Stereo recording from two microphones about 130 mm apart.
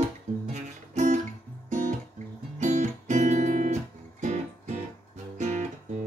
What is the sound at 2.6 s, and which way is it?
Music, 65° right (ahead or behind).